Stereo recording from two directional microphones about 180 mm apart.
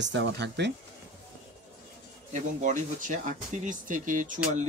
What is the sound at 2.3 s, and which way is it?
Speech, 45° right (ahead or behind).